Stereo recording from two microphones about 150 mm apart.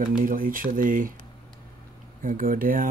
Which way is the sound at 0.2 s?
65° right (ahead or behind).